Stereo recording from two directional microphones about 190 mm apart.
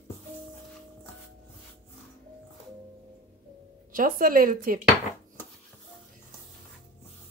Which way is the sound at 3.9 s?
50° right (ahead or behind).